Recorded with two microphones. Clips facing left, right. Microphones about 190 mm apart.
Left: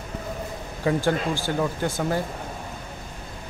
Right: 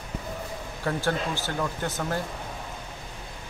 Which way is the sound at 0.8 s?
15° left (ahead or behind).